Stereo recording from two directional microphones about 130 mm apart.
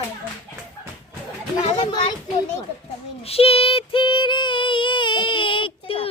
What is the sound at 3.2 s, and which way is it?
Child singing, 50° left (ahead or behind).